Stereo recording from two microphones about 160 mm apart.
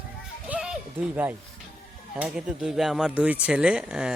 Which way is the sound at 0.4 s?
5° right (ahead or behind).